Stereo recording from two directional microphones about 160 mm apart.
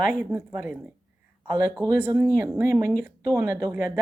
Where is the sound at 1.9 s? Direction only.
10° right (ahead or behind).